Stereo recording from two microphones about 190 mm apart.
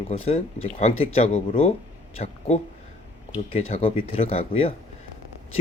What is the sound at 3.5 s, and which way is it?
Speech, 30° left (ahead or behind).